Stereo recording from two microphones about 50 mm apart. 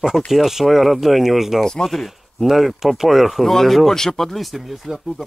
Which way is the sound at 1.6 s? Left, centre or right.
Centre.